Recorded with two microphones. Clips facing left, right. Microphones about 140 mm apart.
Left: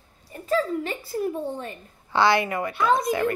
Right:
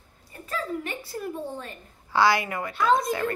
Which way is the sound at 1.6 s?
25° left (ahead or behind).